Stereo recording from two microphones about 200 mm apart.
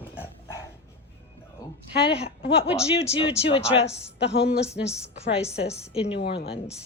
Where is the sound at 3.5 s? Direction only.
30° left (ahead or behind).